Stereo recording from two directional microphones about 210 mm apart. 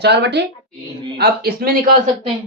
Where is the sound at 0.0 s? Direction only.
50° right (ahead or behind).